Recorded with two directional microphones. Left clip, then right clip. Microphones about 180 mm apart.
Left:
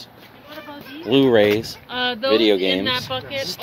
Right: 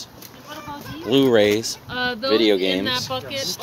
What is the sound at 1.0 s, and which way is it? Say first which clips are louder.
Speech: left 1 dB; 5° left (ahead or behind).